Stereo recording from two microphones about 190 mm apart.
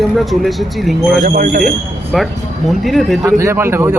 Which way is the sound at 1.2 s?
50° right (ahead or behind).